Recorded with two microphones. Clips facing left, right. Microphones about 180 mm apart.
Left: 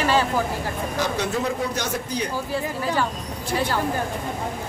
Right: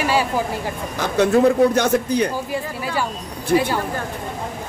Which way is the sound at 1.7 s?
60° right (ahead or behind).